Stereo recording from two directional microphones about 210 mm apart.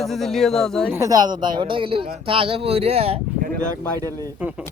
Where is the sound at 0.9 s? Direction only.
15° right (ahead or behind).